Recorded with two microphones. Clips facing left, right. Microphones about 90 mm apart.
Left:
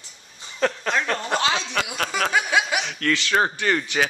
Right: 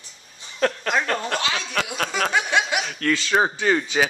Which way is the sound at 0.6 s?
Centre (ahead or behind).